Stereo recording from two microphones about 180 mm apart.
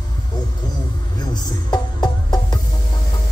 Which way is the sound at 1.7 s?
20° left (ahead or behind).